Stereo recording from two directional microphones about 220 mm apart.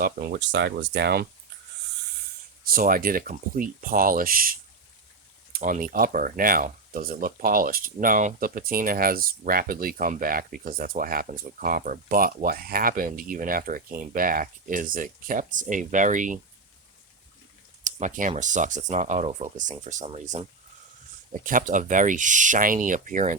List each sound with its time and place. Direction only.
0.0 s speech: 45° right (ahead or behind)
2.6 s speech: 40° right (ahead or behind)
17.8 s speech: 35° right (ahead or behind)
21.4 s speech: 35° right (ahead or behind)